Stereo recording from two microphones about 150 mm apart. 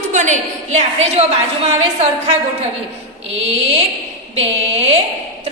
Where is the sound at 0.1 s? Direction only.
55° right (ahead or behind).